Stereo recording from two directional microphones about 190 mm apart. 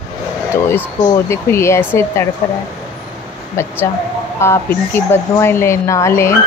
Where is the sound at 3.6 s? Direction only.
15° left (ahead or behind).